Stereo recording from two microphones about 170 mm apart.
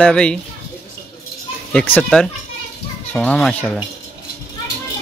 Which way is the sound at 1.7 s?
5° left (ahead or behind).